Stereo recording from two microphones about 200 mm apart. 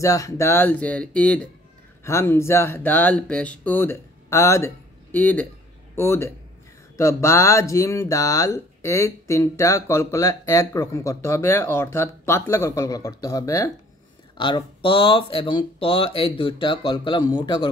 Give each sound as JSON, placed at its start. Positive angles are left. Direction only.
{"t": 0.0, "sound": "speech", "side_deg": 15}